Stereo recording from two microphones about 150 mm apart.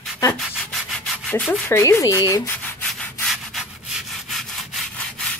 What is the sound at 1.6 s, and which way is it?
Speech, 15° left (ahead or behind).